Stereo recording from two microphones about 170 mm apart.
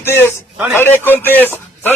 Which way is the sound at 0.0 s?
15° left (ahead or behind).